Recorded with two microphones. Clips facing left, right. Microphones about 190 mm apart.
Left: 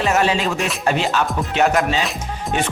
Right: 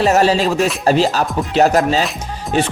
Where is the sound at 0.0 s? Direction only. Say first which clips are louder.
Right 5 dB; 35° right (ahead or behind).